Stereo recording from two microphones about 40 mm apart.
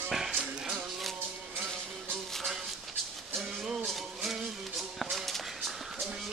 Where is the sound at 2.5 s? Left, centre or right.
Centre.